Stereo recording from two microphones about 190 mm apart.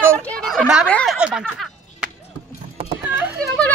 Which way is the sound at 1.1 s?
5° right (ahead or behind).